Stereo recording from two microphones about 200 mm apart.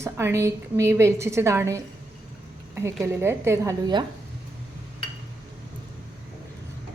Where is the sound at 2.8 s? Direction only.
10° right (ahead or behind).